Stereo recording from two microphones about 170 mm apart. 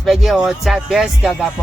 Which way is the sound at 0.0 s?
Centre (ahead or behind).